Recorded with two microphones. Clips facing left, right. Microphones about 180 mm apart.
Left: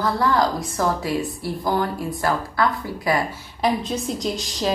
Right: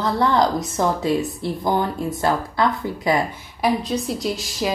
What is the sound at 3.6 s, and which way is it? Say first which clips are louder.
A woman's voice: right 1 dB; centre (ahead or behind).